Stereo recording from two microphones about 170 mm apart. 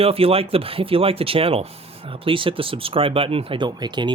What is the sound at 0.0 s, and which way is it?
Speech, 35° right (ahead or behind).